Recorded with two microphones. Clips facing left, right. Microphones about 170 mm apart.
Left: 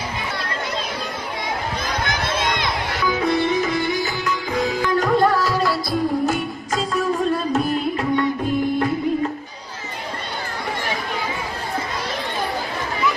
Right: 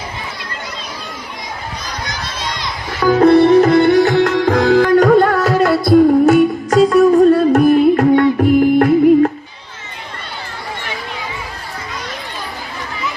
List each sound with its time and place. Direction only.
1.9 s run: 55° left (ahead or behind)
3.0 s music: 60° right (ahead or behind)